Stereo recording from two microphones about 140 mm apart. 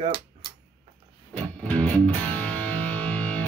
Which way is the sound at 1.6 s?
10° left (ahead or behind).